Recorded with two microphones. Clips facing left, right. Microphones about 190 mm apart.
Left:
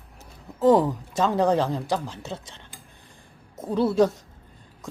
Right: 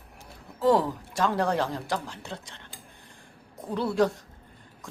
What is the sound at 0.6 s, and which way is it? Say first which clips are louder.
Speech: left 4 dB; 20° left (ahead or behind).